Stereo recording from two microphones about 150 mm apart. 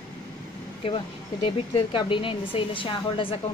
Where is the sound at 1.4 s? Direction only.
35° left (ahead or behind).